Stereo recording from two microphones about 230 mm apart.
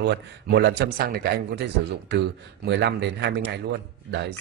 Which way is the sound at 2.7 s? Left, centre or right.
Right.